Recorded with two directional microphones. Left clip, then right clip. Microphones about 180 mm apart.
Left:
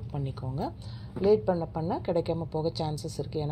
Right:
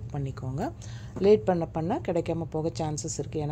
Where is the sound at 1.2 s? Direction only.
30° right (ahead or behind).